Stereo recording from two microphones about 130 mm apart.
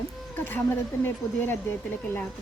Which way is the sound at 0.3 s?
15° left (ahead or behind).